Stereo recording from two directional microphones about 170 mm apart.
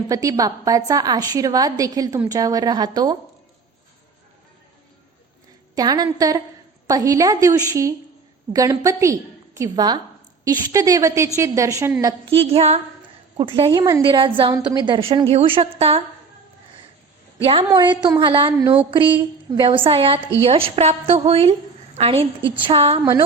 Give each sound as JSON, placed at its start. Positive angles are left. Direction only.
{"t": 0.1, "sound": "a woman's voice", "side_deg": -20}
{"t": 5.7, "sound": "a woman's voice", "side_deg": -25}
{"t": 12.2, "sound": "a woman's voice", "side_deg": -35}
{"t": 17.4, "sound": "a woman's voice", "side_deg": -35}